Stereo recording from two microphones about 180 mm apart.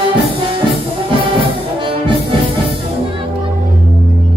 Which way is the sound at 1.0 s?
30° right (ahead or behind).